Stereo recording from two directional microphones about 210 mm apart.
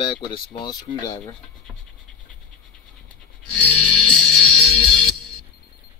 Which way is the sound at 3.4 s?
90° right.